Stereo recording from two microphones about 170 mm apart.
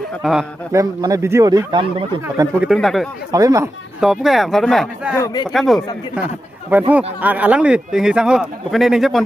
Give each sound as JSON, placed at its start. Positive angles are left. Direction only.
{"t": 0.2, "sound": "speech", "side_deg": 0}
{"t": 0.7, "sound": "speech", "side_deg": -20}
{"t": 2.2, "sound": "speech", "side_deg": -10}
{"t": 2.7, "sound": "speech", "side_deg": 0}
{"t": 3.3, "sound": "speech", "side_deg": -20}
{"t": 4.0, "sound": "speech", "side_deg": 0}
{"t": 5.2, "sound": "speech", "side_deg": 25}
{"t": 5.5, "sound": "speech", "side_deg": 0}
{"t": 6.9, "sound": "speech", "side_deg": -10}